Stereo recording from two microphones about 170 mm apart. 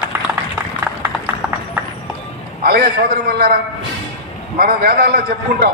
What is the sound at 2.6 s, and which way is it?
Speech, 65° right (ahead or behind).